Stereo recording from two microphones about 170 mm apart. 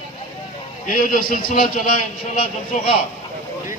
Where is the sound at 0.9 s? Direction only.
55° left (ahead or behind).